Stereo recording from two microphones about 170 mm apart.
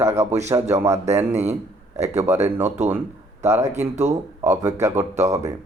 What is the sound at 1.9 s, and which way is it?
Speech, 40° right (ahead or behind).